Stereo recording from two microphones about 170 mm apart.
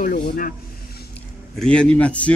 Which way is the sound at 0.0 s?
60° left (ahead or behind).